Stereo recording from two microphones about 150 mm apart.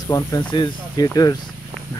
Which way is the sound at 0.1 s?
25° left (ahead or behind).